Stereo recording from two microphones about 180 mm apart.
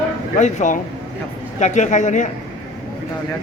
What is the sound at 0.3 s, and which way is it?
Speech, 45° left (ahead or behind).